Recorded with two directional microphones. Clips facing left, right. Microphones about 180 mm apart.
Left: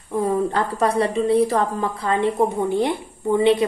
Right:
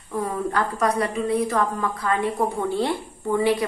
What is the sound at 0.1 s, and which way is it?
A woman's voice, 25° left (ahead or behind).